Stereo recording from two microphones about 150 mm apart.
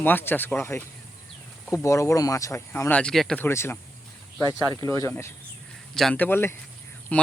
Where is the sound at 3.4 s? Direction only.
15° left (ahead or behind).